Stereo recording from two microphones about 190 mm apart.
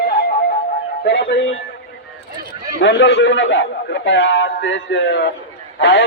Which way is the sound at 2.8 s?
70° left (ahead or behind).